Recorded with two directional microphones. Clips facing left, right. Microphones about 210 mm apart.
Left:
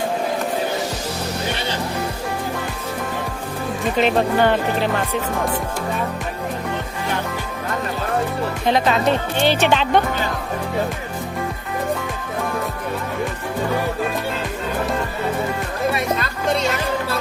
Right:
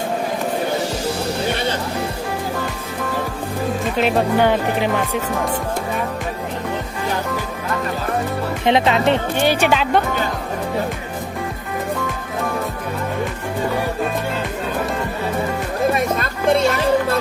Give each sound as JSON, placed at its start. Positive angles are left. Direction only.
{"t": 3.9, "sound": "speech", "side_deg": -5}
{"t": 8.6, "sound": "speech", "side_deg": -20}
{"t": 9.4, "sound": "speech", "side_deg": -10}
{"t": 16.1, "sound": "music", "side_deg": -50}